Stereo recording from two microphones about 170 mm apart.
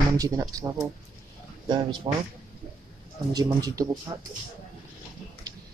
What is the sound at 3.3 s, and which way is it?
Speech, 20° right (ahead or behind).